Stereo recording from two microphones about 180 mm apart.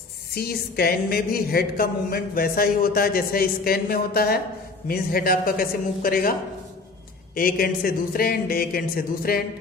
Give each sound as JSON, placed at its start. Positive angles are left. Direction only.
{"t": 0.3, "sound": "a woman's voice", "side_deg": 60}
{"t": 7.3, "sound": "a woman's voice", "side_deg": 55}